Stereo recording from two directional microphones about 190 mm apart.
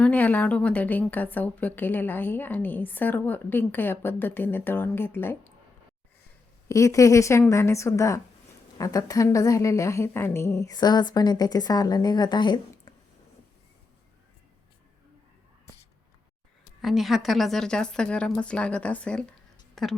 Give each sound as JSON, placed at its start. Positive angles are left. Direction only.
{"t": 0.0, "sound": "a woman's voice", "side_deg": 10}
{"t": 6.7, "sound": "a woman's voice", "side_deg": 15}
{"t": 16.8, "sound": "a woman's voice", "side_deg": 0}